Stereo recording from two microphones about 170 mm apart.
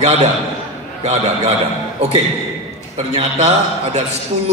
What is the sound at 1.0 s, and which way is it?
A man's voice, 40° right (ahead or behind).